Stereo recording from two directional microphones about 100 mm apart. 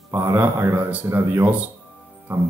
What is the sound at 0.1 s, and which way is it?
Speech, 25° right (ahead or behind).